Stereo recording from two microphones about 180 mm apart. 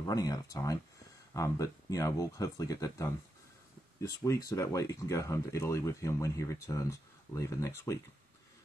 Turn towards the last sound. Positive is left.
turn(degrees=15)  # may be behind; listen again after turning